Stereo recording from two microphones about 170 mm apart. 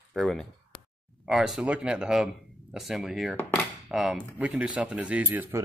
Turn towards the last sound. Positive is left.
turn(degrees=-10)  # may be behind; listen again after turning